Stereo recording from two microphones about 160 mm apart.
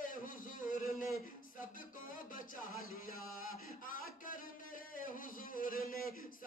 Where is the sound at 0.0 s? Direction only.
60° left (ahead or behind).